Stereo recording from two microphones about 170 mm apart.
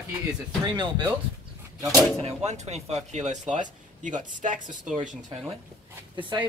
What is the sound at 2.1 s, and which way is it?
Speech, 40° right (ahead or behind).